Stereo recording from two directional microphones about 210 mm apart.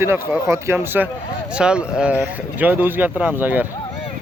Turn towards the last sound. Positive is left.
turn(degrees=-10)  # may be behind; listen again after turning